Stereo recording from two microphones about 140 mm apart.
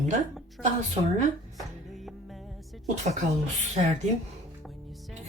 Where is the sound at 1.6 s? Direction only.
Centre (ahead or behind).